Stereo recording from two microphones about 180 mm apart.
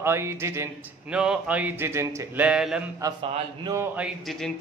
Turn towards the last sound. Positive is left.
turn(degrees=0)  # may be behind; listen again after turning